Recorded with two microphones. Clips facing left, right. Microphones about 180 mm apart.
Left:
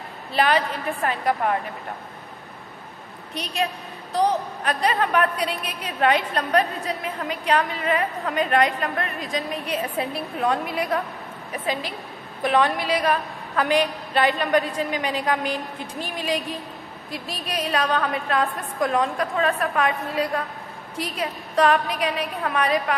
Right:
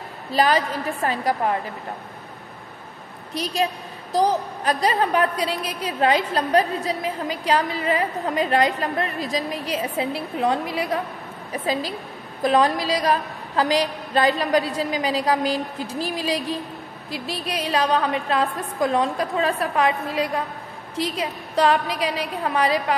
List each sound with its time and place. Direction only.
0.3 s a woman's voice: 35° right (ahead or behind)
3.3 s a woman's voice: 35° right (ahead or behind)